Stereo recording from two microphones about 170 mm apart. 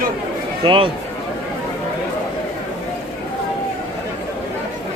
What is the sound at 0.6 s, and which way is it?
Speech, 30° right (ahead or behind).